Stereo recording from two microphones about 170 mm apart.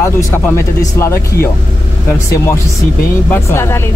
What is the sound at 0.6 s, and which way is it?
Speech, 15° left (ahead or behind).